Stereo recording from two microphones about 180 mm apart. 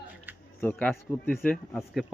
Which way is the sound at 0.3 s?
10° right (ahead or behind).